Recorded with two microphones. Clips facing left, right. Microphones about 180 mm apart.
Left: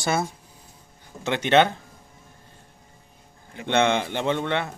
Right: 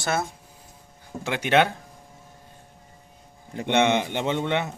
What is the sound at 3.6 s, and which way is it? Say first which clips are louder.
A man's voice: even; 20° right (ahead or behind).